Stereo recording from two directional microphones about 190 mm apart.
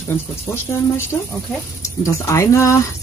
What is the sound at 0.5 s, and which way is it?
Speech, 15° left (ahead or behind).